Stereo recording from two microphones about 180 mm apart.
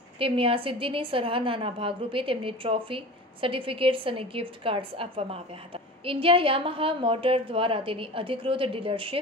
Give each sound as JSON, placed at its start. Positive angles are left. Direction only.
{"t": 0.2, "sound": "a woman's voice", "side_deg": -30}